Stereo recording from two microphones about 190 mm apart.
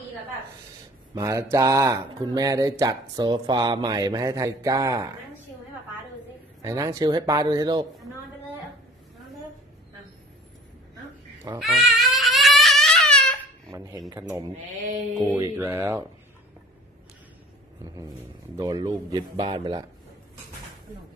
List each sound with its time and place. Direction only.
1.1 s speech: 15° right (ahead or behind)
6.6 s speech: 15° right (ahead or behind)
11.5 s goat: centre (ahead or behind)
13.7 s speech: 15° right (ahead or behind)
15.3 s speech: 15° right (ahead or behind)
17.8 s speech: 20° right (ahead or behind)